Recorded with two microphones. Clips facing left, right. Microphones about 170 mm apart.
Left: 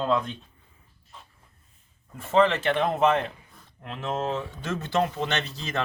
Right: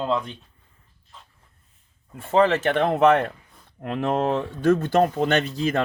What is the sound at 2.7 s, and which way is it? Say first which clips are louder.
Speech: right 4 dB; 60° right (ahead or behind).